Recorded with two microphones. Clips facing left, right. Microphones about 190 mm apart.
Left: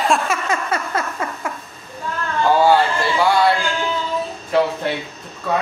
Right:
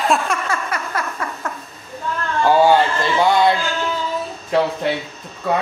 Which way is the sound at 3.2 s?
20° right (ahead or behind).